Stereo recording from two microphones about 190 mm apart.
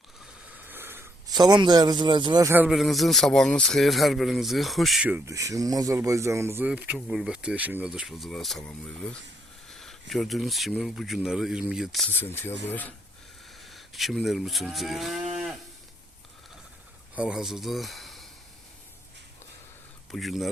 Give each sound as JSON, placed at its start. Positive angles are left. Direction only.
{"t": 0.5, "sound": "a sound", "side_deg": -10}
{"t": 2.5, "sound": "speech", "side_deg": -5}
{"t": 13.6, "sound": "moo", "side_deg": 0}
{"t": 17.2, "sound": "speech", "side_deg": -5}
{"t": 20.1, "sound": "speech", "side_deg": 0}